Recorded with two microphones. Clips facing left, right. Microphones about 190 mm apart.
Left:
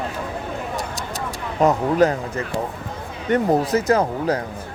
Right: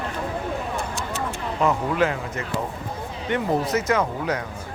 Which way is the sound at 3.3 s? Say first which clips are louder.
Left 5 dB; 35° left (ahead or behind).